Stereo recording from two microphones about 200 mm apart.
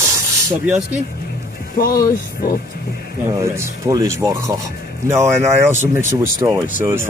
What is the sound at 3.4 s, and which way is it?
Speech, 15° right (ahead or behind).